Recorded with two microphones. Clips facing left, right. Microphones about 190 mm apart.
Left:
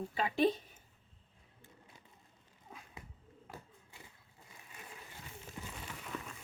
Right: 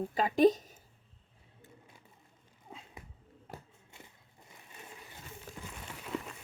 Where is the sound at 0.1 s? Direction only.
45° right (ahead or behind).